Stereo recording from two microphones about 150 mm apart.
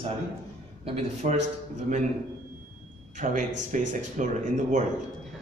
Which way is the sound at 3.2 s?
55° right (ahead or behind).